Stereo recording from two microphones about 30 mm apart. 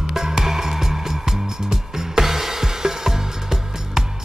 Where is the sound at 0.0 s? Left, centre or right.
Centre.